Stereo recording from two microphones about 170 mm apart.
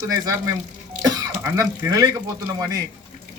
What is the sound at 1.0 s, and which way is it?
Throat clearing, 20° right (ahead or behind).